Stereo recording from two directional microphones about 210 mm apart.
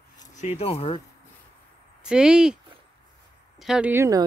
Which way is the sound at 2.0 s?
5° right (ahead or behind).